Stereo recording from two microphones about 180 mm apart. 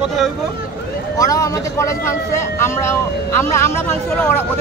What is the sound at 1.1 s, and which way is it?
Speech, 20° left (ahead or behind).